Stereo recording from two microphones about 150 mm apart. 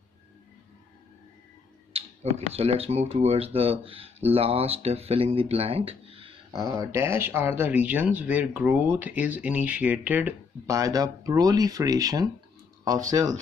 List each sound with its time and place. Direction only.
2.0 s speech: 40° right (ahead or behind)
6.6 s speech: 20° right (ahead or behind)
10.7 s speech: 25° right (ahead or behind)